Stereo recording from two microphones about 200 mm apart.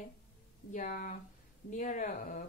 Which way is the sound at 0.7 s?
40° left (ahead or behind).